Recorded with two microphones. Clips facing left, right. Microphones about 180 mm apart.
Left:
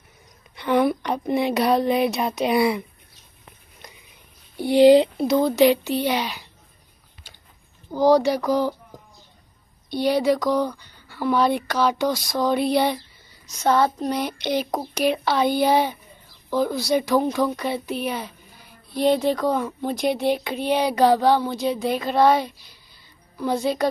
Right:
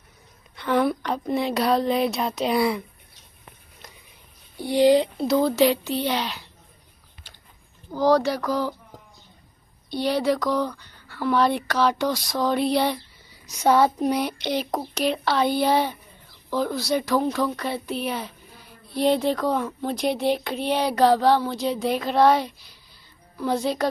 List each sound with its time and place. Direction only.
0.6 s a sound: 15° left (ahead or behind)
1.0 s speech: 15° left (ahead or behind)
4.6 s speech: 25° left (ahead or behind)
5.7 s speech: 5° left (ahead or behind)
7.9 s speech: 15° left (ahead or behind)
9.8 s speech: 10° left (ahead or behind)
13.6 s a sound: 10° right (ahead or behind)
15.0 s speech: 5° left (ahead or behind)
16.7 s speech: centre (ahead or behind)
17.0 s speech: 10° left (ahead or behind)